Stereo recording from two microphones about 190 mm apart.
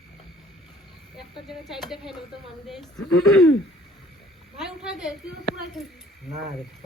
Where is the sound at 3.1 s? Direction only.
90° left.